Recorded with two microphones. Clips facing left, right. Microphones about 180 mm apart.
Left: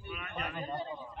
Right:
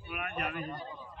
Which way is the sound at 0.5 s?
25° left (ahead or behind).